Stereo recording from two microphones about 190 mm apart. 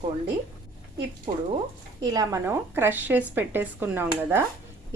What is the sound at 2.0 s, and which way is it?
A woman's voice, 20° right (ahead or behind).